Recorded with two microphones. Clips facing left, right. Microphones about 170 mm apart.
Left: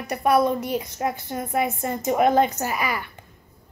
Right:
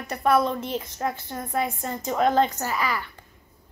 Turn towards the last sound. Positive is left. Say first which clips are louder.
# left 1 dB
turn(degrees=15)  # may be behind; listen again after turning